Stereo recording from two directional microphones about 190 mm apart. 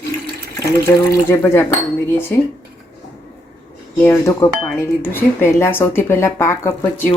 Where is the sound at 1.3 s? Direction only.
15° left (ahead or behind).